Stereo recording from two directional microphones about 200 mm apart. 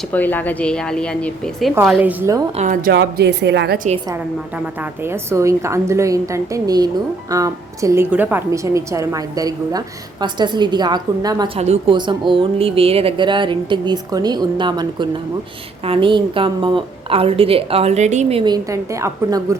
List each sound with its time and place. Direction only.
0.1 s speech: 10° left (ahead or behind)
1.9 s a woman's voice: 10° right (ahead or behind)
2.6 s speech: 40° right (ahead or behind)
2.9 s speech: 60° right (ahead or behind)
4.1 s a woman's voice: 10° right (ahead or behind)